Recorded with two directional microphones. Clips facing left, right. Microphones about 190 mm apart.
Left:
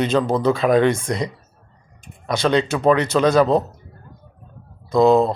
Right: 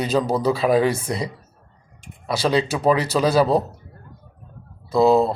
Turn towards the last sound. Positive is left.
turn(degrees=-5)  # may be behind; listen again after turning